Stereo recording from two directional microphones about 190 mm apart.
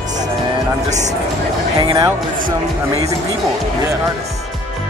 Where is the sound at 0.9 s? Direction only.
40° right (ahead or behind).